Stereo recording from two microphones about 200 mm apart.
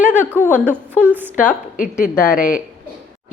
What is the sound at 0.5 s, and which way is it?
A woman's voice, 10° right (ahead or behind).